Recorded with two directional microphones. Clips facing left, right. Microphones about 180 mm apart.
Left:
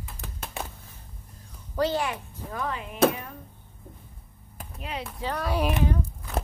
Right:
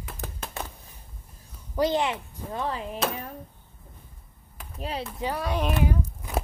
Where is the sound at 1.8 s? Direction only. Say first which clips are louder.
Right 2 dB; 20° right (ahead or behind); by 3.0 s 35° right (ahead or behind).